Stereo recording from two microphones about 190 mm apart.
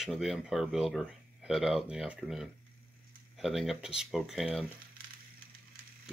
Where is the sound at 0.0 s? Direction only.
Centre (ahead or behind).